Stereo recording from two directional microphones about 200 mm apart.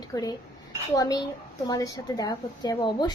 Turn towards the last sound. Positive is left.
turn(degrees=20)  # may be behind; listen again after turning